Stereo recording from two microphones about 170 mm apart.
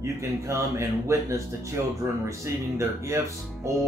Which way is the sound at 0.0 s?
15° right (ahead or behind).